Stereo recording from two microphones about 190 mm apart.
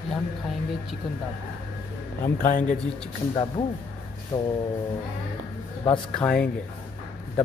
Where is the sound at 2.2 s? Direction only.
45° left (ahead or behind).